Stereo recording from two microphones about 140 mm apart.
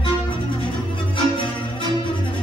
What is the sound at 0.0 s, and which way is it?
Music, 35° left (ahead or behind).